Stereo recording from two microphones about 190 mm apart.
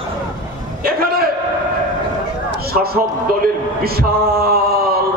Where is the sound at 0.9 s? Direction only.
50° right (ahead or behind).